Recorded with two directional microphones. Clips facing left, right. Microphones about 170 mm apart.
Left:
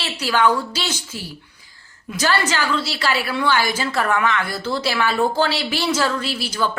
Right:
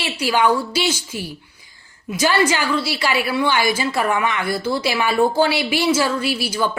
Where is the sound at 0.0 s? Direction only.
15° right (ahead or behind).